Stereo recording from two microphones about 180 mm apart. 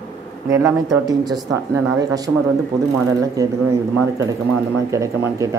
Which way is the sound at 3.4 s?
20° right (ahead or behind).